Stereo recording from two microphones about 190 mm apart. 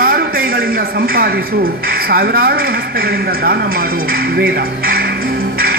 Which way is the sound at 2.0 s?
50° right (ahead or behind).